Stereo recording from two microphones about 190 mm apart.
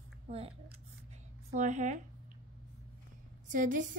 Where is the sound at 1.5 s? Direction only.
40° right (ahead or behind).